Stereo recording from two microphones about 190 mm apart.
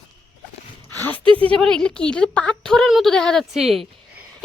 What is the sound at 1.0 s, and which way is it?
A woman's voice, 10° left (ahead or behind).